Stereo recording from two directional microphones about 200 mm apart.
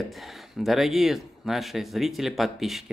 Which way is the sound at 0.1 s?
Centre (ahead or behind).